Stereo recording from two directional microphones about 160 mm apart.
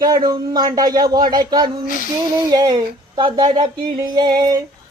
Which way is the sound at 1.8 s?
55° left (ahead or behind).